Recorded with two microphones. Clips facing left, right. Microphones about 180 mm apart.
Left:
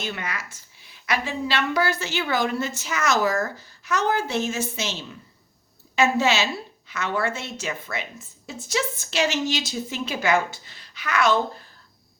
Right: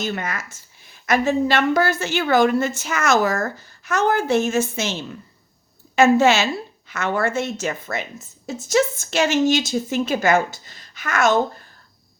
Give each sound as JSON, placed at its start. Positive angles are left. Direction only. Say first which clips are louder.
{"t": 0.0, "sound": "a woman's voice", "louder": "right 5 dB", "side_deg": -45}